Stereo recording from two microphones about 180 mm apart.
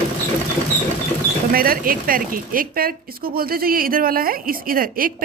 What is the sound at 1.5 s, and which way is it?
A woman's voice, 55° right (ahead or behind).